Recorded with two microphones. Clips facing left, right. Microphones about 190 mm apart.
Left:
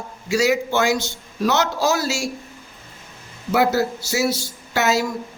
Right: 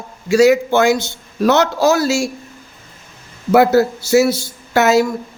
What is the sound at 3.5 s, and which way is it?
Speech, 55° right (ahead or behind).